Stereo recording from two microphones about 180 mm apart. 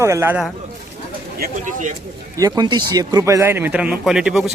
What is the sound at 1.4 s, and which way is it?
Speech, 45° right (ahead or behind).